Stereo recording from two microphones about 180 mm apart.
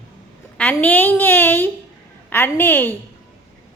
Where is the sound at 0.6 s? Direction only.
10° left (ahead or behind).